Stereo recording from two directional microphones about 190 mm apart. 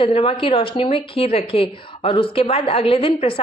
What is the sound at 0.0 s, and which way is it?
A woman's voice, 30° left (ahead or behind).